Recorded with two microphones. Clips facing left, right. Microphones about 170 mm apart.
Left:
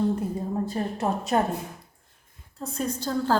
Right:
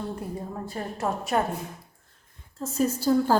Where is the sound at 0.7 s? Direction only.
20° left (ahead or behind).